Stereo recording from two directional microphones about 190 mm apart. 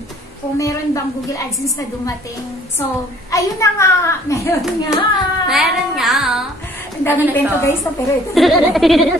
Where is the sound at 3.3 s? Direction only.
15° left (ahead or behind).